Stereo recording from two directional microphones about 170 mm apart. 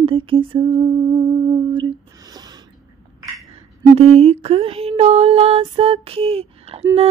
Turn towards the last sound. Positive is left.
turn(degrees=-35)  # may be behind; listen again after turning